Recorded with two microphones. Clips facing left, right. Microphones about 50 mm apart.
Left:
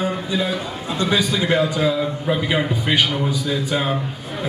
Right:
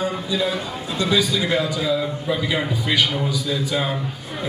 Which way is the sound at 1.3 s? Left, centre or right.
Left.